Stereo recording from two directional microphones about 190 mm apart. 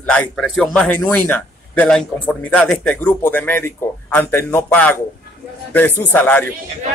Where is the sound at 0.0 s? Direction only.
5° left (ahead or behind).